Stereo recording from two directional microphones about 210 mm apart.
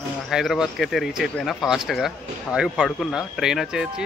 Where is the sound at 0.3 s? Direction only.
Centre (ahead or behind).